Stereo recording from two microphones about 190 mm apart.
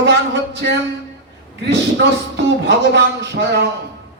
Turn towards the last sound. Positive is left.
turn(degrees=-60)  # may be behind; listen again after turning